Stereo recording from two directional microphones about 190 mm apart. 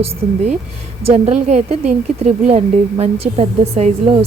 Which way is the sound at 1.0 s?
30° right (ahead or behind).